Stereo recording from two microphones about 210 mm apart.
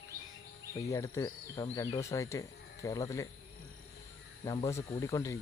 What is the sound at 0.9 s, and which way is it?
Speech, 15° left (ahead or behind).